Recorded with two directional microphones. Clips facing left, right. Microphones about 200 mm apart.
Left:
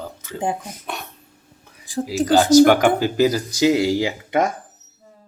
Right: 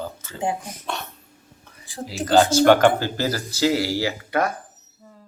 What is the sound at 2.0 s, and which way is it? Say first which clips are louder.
Speech: left 2 dB; 10° left (ahead or behind).